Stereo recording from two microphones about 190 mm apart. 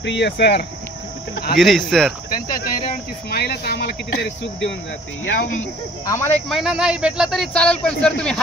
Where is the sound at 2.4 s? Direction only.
50° left (ahead or behind).